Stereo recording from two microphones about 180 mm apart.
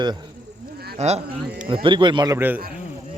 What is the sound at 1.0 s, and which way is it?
A man's voice, 35° right (ahead or behind).